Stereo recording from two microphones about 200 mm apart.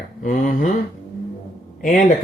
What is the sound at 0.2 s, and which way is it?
Speech, 40° left (ahead or behind).